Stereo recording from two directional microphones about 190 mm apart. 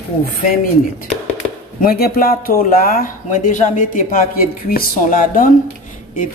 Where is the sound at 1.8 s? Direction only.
50° left (ahead or behind).